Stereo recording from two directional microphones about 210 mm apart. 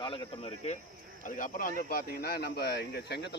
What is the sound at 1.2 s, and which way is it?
Speech, 40° left (ahead or behind).